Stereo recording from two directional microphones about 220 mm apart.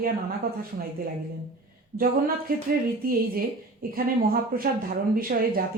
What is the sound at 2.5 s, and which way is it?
Speech, 40° right (ahead or behind).